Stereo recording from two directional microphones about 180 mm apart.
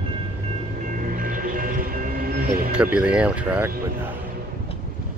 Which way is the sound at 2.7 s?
5° right (ahead or behind).